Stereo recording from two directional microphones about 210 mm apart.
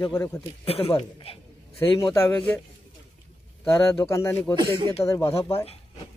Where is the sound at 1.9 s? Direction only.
15° left (ahead or behind).